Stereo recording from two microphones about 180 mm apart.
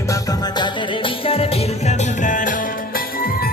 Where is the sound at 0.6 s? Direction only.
30° left (ahead or behind).